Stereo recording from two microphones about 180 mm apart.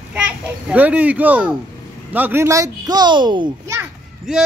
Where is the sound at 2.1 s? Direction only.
10° right (ahead or behind).